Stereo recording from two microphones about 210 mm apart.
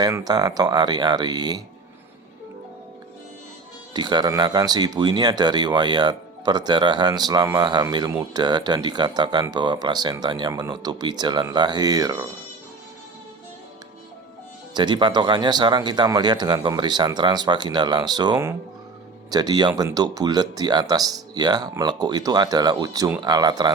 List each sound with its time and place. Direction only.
0.0 s speech: 20° right (ahead or behind)
3.9 s speech: 20° right (ahead or behind)
14.7 s speech: 20° right (ahead or behind)